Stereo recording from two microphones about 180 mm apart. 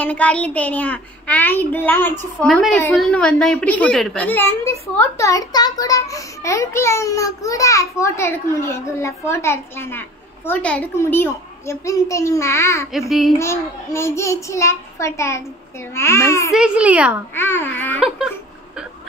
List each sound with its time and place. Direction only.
0.0 s a child's voice: 10° left (ahead or behind)
16.5 s a child's voice: 5° right (ahead or behind)
17.4 s a child's voice: 10° left (ahead or behind)